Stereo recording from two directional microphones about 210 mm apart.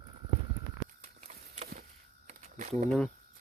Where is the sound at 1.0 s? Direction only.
35° right (ahead or behind).